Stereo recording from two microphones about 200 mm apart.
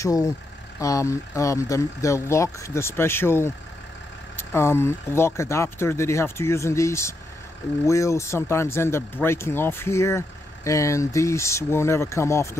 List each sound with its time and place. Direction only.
0.0 s speech: 15° left (ahead or behind)